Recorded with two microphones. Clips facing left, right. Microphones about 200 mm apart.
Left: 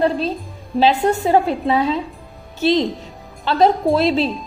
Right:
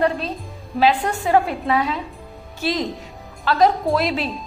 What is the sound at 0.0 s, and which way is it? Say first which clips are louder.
A woman's voice: left 3 dB; 30° left (ahead or behind).